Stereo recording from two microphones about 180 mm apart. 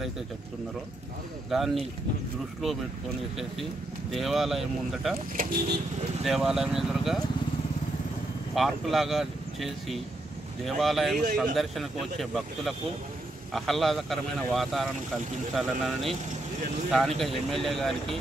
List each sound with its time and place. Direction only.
1.5 s a man's voice: centre (ahead or behind)
4.1 s a man's voice: centre (ahead or behind)
5.4 s speech: 50° right (ahead or behind)
6.2 s a man's voice: centre (ahead or behind)
8.5 s a man's voice: centre (ahead or behind)